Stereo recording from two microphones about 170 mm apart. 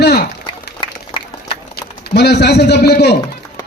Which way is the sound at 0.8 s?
25° left (ahead or behind).